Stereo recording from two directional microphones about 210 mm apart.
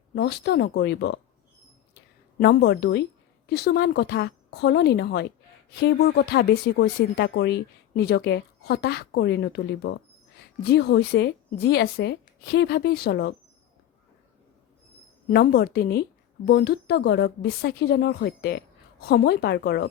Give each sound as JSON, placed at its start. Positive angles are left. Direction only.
{"t": 0.1, "sound": "a woman's voice", "side_deg": 50}
{"t": 2.4, "sound": "a woman's voice", "side_deg": 50}
{"t": 15.3, "sound": "a woman's voice", "side_deg": 45}